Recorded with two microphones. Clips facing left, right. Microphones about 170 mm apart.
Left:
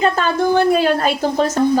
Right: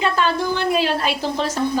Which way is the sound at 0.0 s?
45° left (ahead or behind).